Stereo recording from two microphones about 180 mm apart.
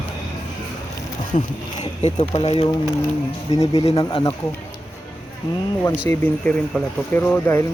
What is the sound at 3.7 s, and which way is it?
Speech, 35° left (ahead or behind).